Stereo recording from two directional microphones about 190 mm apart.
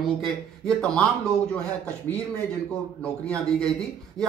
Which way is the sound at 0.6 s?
5° left (ahead or behind).